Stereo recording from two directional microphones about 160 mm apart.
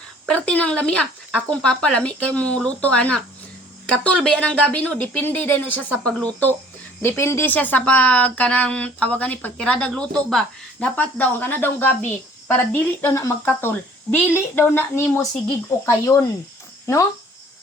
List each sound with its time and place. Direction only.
0.3 s speech: 10° left (ahead or behind)